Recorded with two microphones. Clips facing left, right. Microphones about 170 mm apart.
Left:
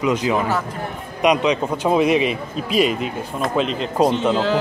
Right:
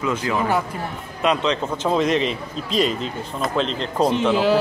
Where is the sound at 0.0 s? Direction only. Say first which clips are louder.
Left 3 dB; 15° left (ahead or behind).